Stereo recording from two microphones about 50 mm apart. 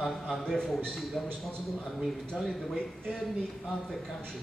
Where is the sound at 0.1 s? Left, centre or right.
Centre.